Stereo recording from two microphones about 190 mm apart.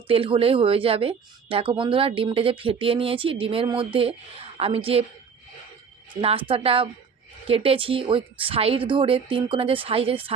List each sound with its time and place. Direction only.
0.1 s speech: 30° right (ahead or behind)
6.2 s speech: 30° right (ahead or behind)